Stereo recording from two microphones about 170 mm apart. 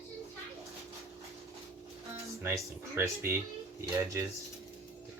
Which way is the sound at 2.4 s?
15° right (ahead or behind).